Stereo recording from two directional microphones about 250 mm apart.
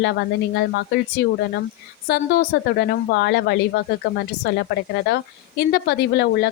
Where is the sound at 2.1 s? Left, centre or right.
Left.